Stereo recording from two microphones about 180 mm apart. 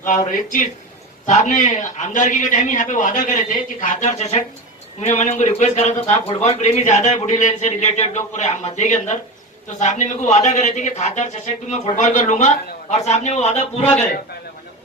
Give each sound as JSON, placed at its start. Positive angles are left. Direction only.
{"t": 1.3, "sound": "a man's voice", "side_deg": 45}